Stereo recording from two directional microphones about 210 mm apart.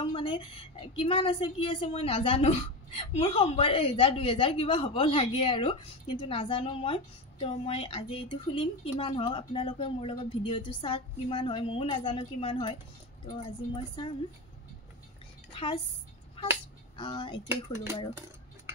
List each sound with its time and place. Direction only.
0.0 s a woman's voice: 20° left (ahead or behind)
13.7 s a woman's voice: 20° left (ahead or behind)
15.5 s music: 25° left (ahead or behind)
16.9 s a woman's voice: 20° left (ahead or behind)
17.5 s speech: 10° right (ahead or behind)